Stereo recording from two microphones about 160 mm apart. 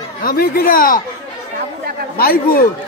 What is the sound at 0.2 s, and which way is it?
Speech, 65° left (ahead or behind).